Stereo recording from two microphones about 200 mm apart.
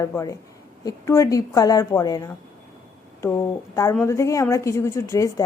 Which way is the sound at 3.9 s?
15° left (ahead or behind).